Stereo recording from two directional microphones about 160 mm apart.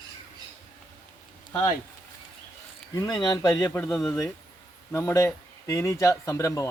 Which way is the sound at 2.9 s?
25° left (ahead or behind).